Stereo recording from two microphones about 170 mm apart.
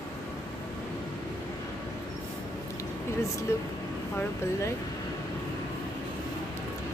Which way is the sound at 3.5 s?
15° left (ahead or behind).